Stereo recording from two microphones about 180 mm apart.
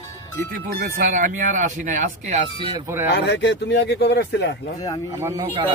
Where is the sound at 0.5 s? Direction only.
50° right (ahead or behind).